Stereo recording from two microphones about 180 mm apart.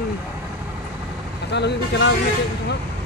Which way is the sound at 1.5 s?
70° left (ahead or behind).